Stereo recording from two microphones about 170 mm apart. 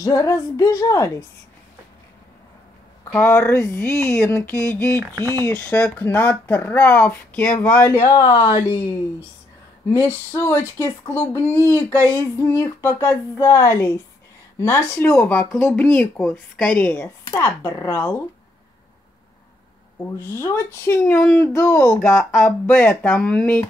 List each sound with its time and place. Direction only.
0.0 s a woman's voice: 20° left (ahead or behind)
3.1 s speech: 15° left (ahead or behind)
5.0 s speech: 20° right (ahead or behind)
5.4 s speech: 15° left (ahead or behind)
9.8 s speech: 15° left (ahead or behind)
20.2 s speech: 15° left (ahead or behind)
22.2 s speech: 5° left (ahead or behind)